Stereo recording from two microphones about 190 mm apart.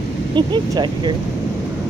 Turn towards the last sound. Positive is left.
turn(degrees=-25)  # may be behind; listen again after turning